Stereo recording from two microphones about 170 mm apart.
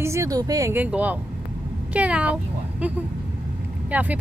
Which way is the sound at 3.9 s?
10° right (ahead or behind).